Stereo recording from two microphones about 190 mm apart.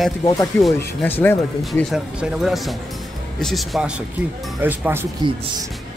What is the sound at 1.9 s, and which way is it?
Speech, 5° right (ahead or behind).